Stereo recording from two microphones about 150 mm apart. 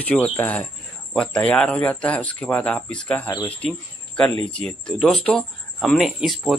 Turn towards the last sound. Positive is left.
turn(degrees=0)  # may be behind; listen again after turning